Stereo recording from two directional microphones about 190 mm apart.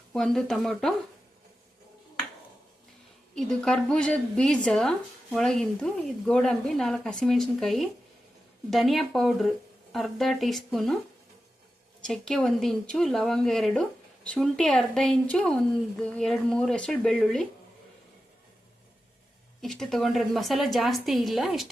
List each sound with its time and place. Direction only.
0.1 s speech: centre (ahead or behind)
3.3 s speech: 5° left (ahead or behind)
12.0 s speech: 5° left (ahead or behind)
19.6 s speech: centre (ahead or behind)